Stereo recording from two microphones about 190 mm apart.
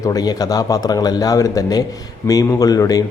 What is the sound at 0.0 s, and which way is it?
Speech, 20° left (ahead or behind).